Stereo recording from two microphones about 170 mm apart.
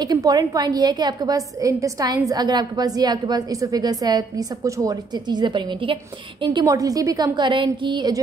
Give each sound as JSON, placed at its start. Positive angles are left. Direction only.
{"t": 0.0, "sound": "a woman's voice", "side_deg": -25}